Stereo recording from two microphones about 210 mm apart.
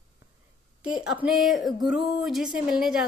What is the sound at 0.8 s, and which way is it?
A woman's voice, 5° right (ahead or behind).